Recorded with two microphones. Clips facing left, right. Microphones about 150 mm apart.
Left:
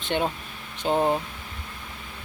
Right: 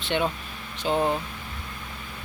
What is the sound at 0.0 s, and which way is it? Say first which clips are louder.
Speech: even; 45° left (ahead or behind).